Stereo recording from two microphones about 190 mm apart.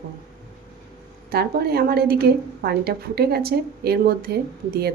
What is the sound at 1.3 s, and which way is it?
A woman's voice, 55° right (ahead or behind).